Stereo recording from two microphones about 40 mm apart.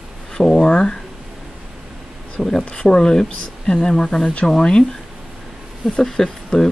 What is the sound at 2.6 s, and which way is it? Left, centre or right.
Speech, left.